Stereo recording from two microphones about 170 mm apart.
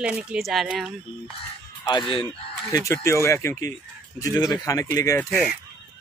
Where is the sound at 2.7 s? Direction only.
15° left (ahead or behind).